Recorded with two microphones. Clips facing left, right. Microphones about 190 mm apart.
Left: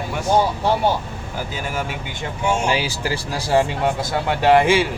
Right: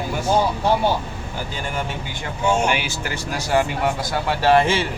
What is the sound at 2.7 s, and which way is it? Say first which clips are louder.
Speech: left 2 dB; 30° left (ahead or behind).